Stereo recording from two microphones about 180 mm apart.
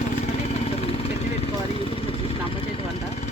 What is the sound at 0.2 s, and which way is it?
Vehicle, 40° left (ahead or behind).